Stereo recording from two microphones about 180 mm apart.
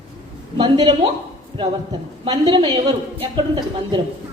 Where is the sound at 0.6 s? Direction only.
30° right (ahead or behind).